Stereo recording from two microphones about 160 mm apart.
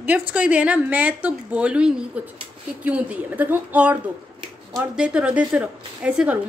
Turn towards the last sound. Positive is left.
turn(degrees=-5)  # may be behind; listen again after turning